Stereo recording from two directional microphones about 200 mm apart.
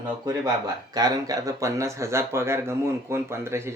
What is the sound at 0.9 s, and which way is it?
Speech, 20° right (ahead or behind).